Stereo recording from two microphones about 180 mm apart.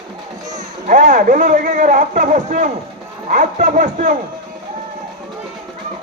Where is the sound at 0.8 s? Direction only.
45° right (ahead or behind).